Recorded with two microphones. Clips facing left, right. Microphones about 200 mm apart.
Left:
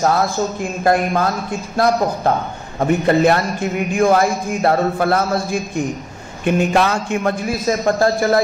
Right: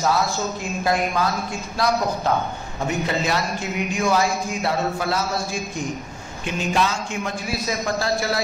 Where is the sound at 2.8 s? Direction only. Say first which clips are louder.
Left 10 dB; 55° left (ahead or behind).